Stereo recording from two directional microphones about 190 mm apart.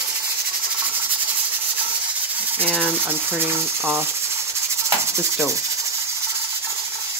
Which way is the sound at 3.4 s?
10° right (ahead or behind).